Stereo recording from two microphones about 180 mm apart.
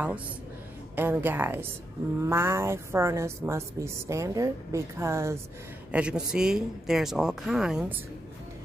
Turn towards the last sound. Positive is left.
turn(degrees=-5)  # may be behind; listen again after turning